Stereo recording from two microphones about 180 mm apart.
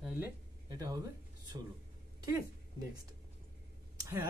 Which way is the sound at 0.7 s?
20° right (ahead or behind).